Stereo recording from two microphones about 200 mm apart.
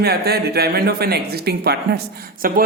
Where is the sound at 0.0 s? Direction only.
50° right (ahead or behind).